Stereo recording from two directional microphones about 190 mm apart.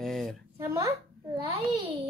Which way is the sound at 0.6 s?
15° right (ahead or behind).